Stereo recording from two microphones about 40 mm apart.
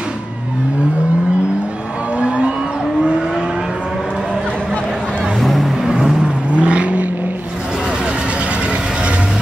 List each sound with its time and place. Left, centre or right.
2.1 s music: right
5.4 s music: centre
5.9 s vehicle: centre
6.5 s vehicle: right